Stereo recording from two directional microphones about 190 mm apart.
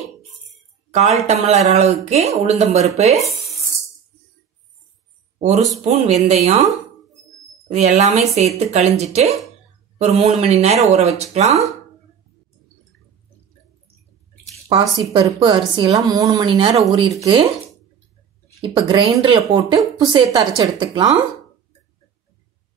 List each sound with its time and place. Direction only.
0.9 s speech: 35° right (ahead or behind)
5.9 s speech: 35° right (ahead or behind)
14.7 s a woman's voice: 25° right (ahead or behind)
16.9 s speech: 20° right (ahead or behind)
18.6 s a woman's voice: 30° right (ahead or behind)